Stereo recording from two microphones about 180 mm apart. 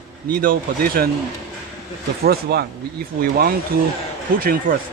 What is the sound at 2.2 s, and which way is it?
Speech, 60° right (ahead or behind).